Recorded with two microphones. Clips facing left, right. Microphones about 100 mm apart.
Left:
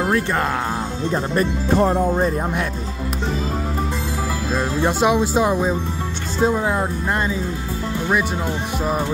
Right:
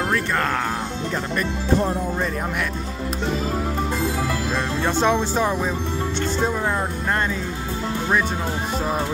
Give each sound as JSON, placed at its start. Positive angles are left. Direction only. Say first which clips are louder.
{"t": 1.1, "sound": "speech", "louder": "left 6 dB", "side_deg": 35}
{"t": 4.7, "sound": "speech", "louder": "left 3 dB", "side_deg": 15}